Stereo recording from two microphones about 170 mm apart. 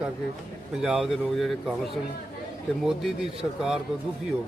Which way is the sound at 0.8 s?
5° right (ahead or behind).